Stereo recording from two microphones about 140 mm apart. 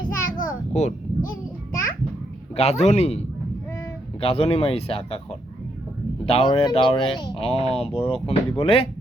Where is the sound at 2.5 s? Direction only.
50° left (ahead or behind).